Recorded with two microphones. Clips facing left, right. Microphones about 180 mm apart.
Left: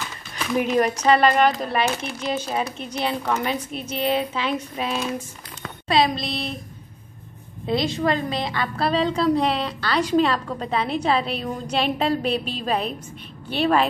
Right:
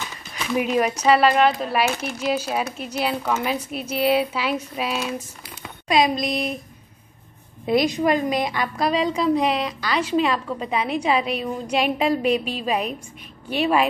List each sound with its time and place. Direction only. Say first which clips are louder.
0.7 s a woman's voice: even; 5° right (ahead or behind)
5.6 s a sound: even; 15° right (ahead or behind)
6.1 s speech: right 4 dB; 30° left (ahead or behind)
7.8 s a woman's voice: right 2 dB; 15° right (ahead or behind)